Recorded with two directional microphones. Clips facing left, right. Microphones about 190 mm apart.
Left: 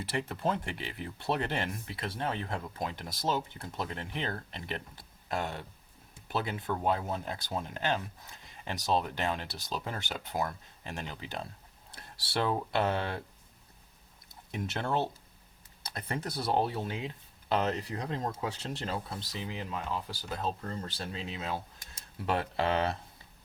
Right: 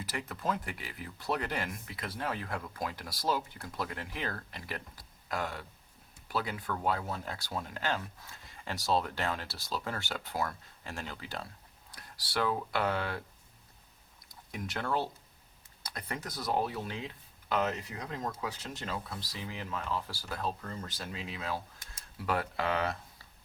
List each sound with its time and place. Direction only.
0.0 s speech: 30° left (ahead or behind)
14.3 s speech: 25° left (ahead or behind)
20.7 s speech: 30° left (ahead or behind)